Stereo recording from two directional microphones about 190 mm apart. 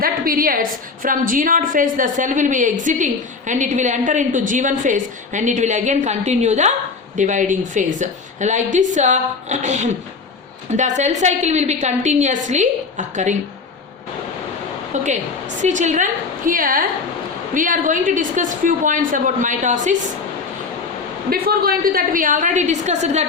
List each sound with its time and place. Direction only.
0.0 s a woman's voice: 50° right (ahead or behind)
15.0 s a woman's voice: 40° right (ahead or behind)
21.2 s a woman's voice: 55° right (ahead or behind); by 23.2 s 35° right (ahead or behind)